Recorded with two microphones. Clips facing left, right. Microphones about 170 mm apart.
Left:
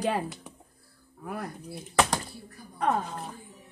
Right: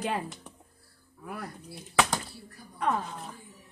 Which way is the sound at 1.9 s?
Centre (ahead or behind).